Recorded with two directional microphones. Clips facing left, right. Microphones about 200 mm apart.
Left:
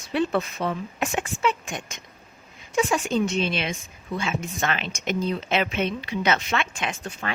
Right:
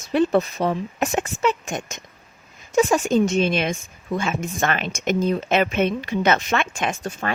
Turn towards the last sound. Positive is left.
turn(degrees=-45)  # may be behind; listen again after turning